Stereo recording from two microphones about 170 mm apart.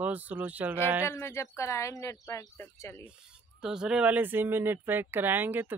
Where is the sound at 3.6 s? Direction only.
5° right (ahead or behind).